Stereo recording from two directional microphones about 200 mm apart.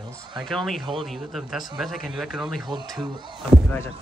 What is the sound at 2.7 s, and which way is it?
Speech, 20° right (ahead or behind).